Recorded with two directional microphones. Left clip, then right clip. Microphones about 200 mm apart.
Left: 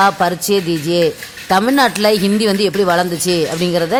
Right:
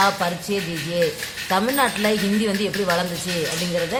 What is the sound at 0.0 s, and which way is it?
Speech, 50° left (ahead or behind).